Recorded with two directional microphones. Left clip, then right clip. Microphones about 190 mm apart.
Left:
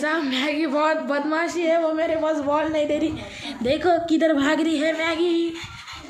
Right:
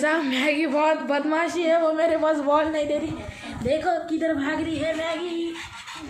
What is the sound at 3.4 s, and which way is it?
A woman's voice, 45° left (ahead or behind).